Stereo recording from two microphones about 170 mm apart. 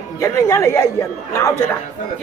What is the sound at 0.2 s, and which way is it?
Speech, 15° left (ahead or behind).